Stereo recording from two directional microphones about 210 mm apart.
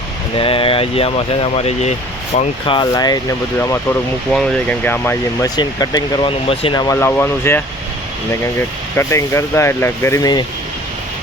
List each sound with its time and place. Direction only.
0.3 s speech: 25° left (ahead or behind)
4.3 s speech: 5° left (ahead or behind)
9.0 s speech: 15° left (ahead or behind)